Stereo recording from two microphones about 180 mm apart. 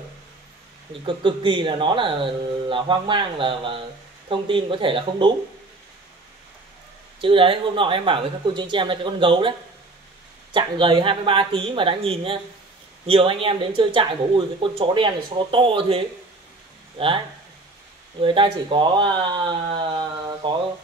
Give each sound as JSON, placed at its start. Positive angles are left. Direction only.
{"t": 1.0, "sound": "speech", "side_deg": -25}
{"t": 7.2, "sound": "speech", "side_deg": -30}
{"t": 10.5, "sound": "speech", "side_deg": -25}
{"t": 18.2, "sound": "speech", "side_deg": -30}